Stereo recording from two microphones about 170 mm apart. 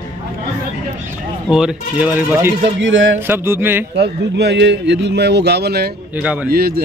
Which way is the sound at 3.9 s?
85° right.